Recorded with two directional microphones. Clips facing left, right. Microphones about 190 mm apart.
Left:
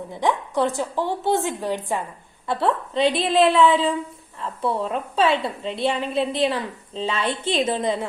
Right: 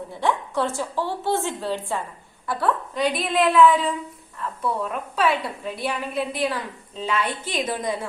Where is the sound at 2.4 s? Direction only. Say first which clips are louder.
Left 2 dB; 25° left (ahead or behind).